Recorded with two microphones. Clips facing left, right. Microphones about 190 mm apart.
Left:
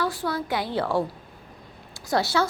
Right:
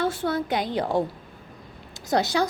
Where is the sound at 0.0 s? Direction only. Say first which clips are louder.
Right 2 dB; 25° right (ahead or behind).